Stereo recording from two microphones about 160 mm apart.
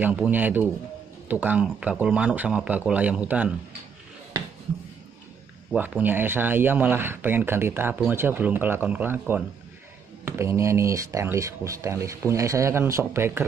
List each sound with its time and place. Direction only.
0.0 s speech: 10° right (ahead or behind)
5.7 s speech: 10° right (ahead or behind)
10.2 s speech: 15° right (ahead or behind)